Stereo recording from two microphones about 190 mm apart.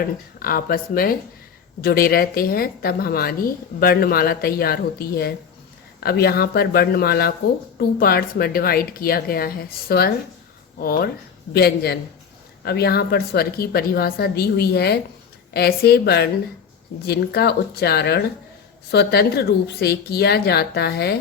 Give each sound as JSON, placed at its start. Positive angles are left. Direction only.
{"t": 0.0, "sound": "a woman's voice", "side_deg": 50}